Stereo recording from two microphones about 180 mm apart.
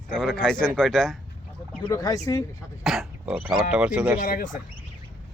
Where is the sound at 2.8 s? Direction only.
Centre (ahead or behind).